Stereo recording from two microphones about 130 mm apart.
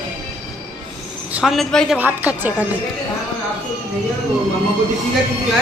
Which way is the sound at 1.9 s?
15° right (ahead or behind).